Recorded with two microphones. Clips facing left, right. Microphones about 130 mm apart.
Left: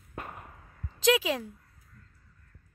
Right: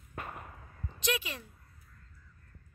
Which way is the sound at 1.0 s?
90° left.